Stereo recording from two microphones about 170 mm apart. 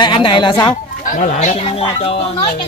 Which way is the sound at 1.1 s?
45° left (ahead or behind).